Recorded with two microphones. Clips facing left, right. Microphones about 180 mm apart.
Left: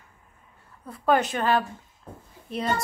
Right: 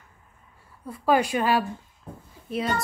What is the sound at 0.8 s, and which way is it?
A woman's voice, 5° right (ahead or behind).